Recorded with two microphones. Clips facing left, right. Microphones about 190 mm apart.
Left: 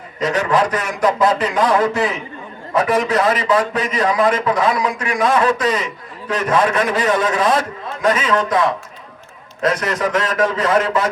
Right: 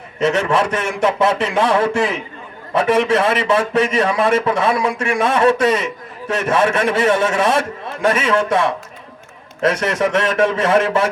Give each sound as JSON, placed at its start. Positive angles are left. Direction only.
{"t": 0.2, "sound": "a man's voice", "side_deg": -25}